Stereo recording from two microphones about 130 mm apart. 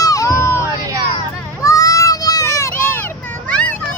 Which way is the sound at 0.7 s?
30° right (ahead or behind).